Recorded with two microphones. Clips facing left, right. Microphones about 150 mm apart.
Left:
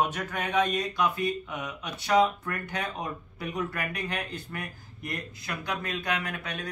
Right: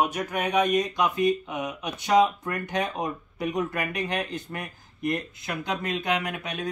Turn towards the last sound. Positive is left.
turn(degrees=-20)  # may be behind; listen again after turning